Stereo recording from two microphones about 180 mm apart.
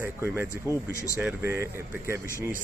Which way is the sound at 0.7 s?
15° left (ahead or behind).